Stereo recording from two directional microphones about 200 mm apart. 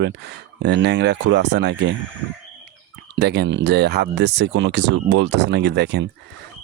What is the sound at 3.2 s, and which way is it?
Speech, 55° right (ahead or behind).